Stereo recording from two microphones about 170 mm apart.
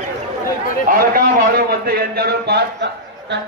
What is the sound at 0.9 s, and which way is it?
A man's voice, 60° right (ahead or behind).